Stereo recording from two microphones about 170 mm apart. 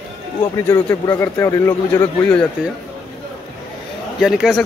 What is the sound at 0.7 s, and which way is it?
A man's voice, 15° left (ahead or behind).